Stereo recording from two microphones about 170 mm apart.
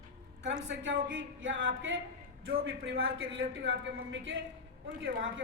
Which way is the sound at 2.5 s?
75° right (ahead or behind).